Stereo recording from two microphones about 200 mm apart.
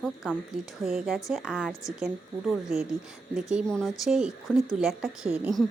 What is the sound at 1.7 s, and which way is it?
Speech, 15° left (ahead or behind).